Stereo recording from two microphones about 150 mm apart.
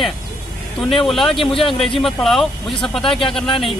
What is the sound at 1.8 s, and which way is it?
Speech, centre (ahead or behind).